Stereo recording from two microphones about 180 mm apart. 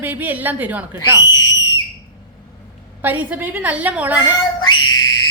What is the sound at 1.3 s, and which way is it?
Speech, 25° left (ahead or behind).